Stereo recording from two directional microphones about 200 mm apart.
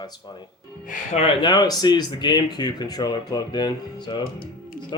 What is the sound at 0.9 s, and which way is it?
Speech, 30° left (ahead or behind).